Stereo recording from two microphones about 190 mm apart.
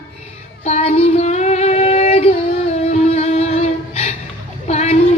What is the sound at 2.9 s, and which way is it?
Music, 35° left (ahead or behind).